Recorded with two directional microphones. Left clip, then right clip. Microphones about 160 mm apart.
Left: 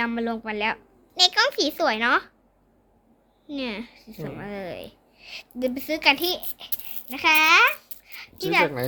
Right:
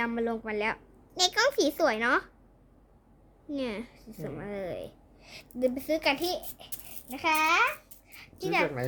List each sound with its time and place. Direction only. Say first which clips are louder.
0.0 s a woman's voice: left 4 dB; 15° right (ahead or behind)
3.5 s a child's voice: left 3 dB; 20° right (ahead or behind)